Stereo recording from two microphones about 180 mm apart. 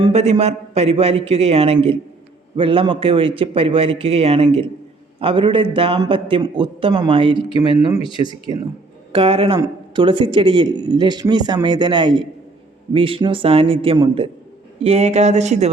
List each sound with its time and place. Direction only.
0.0 s a man's voice: 35° right (ahead or behind)
7.9 s speech: 30° left (ahead or behind)
8.5 s a man's voice: 25° right (ahead or behind)